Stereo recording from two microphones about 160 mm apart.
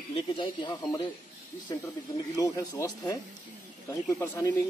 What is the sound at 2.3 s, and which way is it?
Speech, 20° left (ahead or behind).